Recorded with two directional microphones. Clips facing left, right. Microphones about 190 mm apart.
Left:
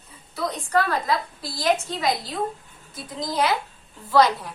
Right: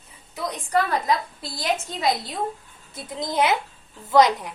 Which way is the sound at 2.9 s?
25° right (ahead or behind).